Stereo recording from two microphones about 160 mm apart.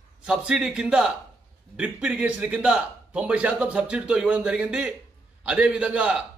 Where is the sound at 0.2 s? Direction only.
5° right (ahead or behind).